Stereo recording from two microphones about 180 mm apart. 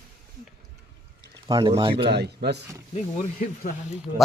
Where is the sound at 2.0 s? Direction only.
65° right (ahead or behind).